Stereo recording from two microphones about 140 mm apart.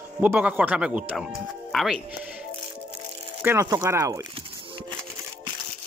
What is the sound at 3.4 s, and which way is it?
Speech, 25° right (ahead or behind).